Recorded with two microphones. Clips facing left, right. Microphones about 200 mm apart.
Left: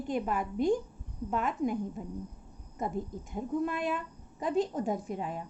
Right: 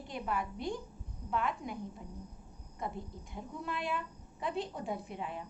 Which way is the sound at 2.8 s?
45° left (ahead or behind).